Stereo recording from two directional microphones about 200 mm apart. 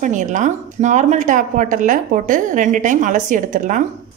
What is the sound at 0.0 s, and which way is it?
A woman's voice, 40° right (ahead or behind).